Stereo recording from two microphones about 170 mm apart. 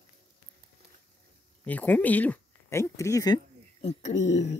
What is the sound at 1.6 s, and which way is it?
Speech, 10° left (ahead or behind).